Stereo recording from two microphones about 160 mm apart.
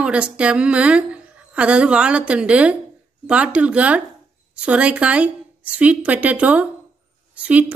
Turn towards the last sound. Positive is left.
turn(degrees=-10)  # may be behind; listen again after turning